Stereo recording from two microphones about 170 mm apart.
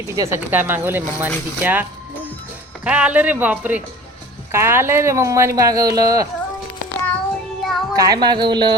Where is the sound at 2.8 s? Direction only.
5° right (ahead or behind).